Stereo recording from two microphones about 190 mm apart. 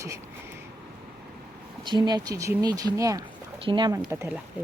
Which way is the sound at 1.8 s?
25° right (ahead or behind).